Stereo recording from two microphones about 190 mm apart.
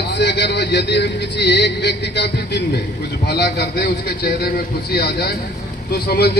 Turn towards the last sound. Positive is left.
turn(degrees=55)  # may be behind; listen again after turning